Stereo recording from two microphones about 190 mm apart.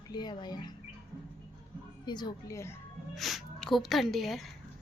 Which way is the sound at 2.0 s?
25° left (ahead or behind).